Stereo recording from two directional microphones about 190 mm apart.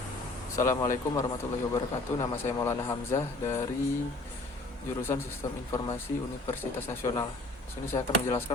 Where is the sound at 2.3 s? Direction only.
15° left (ahead or behind).